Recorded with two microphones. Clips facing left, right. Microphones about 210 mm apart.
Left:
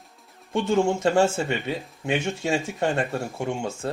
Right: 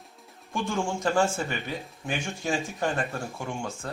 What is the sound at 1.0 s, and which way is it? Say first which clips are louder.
Speech: left 5 dB; 25° left (ahead or behind).